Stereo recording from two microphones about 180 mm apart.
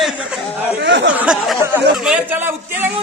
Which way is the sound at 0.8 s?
75° right (ahead or behind).